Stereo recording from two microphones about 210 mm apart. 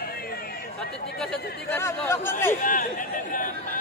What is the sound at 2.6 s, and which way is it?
Chatter, 40° left (ahead or behind).